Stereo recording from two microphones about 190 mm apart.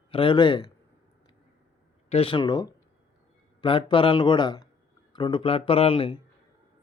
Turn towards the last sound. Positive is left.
turn(degrees=30)  # may be behind; listen again after turning